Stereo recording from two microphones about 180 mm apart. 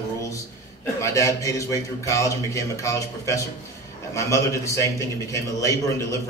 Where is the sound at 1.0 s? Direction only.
15° left (ahead or behind).